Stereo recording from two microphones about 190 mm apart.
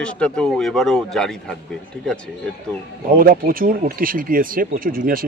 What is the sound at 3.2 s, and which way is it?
Speech, 50° right (ahead or behind).